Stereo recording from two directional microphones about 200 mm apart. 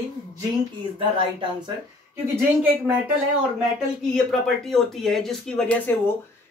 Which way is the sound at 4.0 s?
Centre (ahead or behind).